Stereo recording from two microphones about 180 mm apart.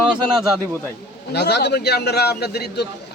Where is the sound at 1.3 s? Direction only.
65° left (ahead or behind).